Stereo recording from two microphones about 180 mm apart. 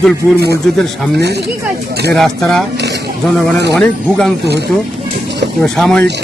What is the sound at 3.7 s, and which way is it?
Speech, 5° left (ahead or behind).